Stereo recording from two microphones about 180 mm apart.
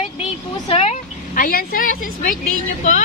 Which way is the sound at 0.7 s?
35° left (ahead or behind).